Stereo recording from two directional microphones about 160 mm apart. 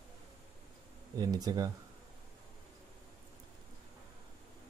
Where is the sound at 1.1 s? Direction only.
25° right (ahead or behind).